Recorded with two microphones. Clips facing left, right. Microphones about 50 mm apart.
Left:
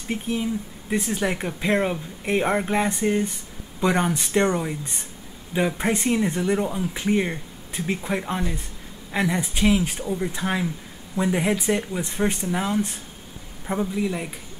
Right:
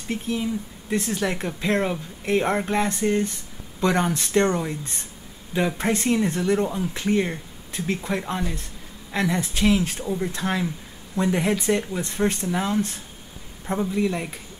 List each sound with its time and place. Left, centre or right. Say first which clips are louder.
0.4 s speech: even; centre
10.0 s speech: even; centre
13.7 s speech: right 1 dB; centre